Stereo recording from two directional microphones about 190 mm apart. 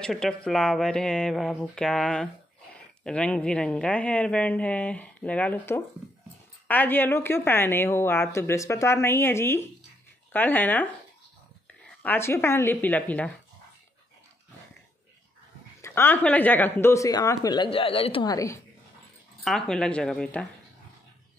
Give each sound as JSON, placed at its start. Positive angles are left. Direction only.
{"t": 0.0, "sound": "speech", "side_deg": 5}
{"t": 12.0, "sound": "speech", "side_deg": 10}
{"t": 15.8, "sound": "speech", "side_deg": 10}
{"t": 19.4, "sound": "speech", "side_deg": 0}